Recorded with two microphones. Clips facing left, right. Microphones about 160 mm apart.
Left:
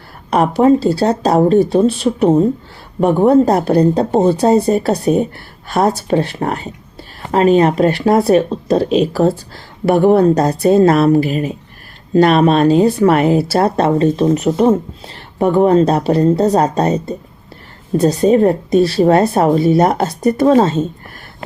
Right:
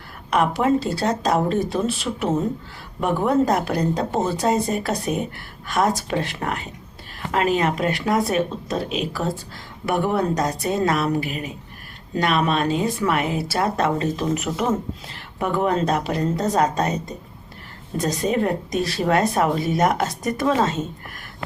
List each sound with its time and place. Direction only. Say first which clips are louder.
0.3 s speech: left 8 dB; 35° left (ahead or behind)